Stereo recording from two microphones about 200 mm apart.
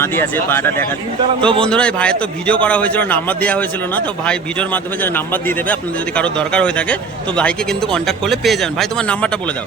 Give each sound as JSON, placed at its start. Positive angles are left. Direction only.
{"t": 0.0, "sound": "a man's voice", "side_deg": 10}
{"t": 1.4, "sound": "a man's voice", "side_deg": -25}
{"t": 1.6, "sound": "a man's voice", "side_deg": 5}